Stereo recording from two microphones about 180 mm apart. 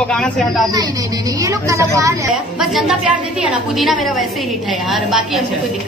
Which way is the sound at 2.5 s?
Centre (ahead or behind).